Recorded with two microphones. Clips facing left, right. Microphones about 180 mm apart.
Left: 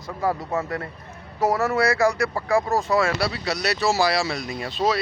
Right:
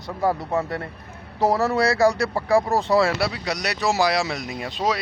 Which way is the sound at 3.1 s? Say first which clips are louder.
Right 1 dB; 20° right (ahead or behind).